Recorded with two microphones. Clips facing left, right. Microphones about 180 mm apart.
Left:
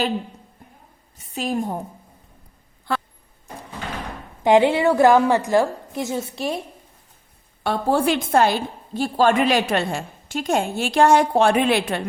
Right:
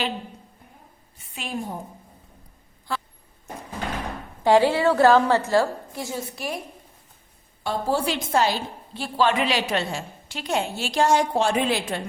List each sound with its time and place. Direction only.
1.2 s a woman's voice: 40° left (ahead or behind)
2.9 s a sound: 65° left (ahead or behind)
4.4 s a woman's voice: 20° left (ahead or behind)
7.6 s a woman's voice: 60° left (ahead or behind)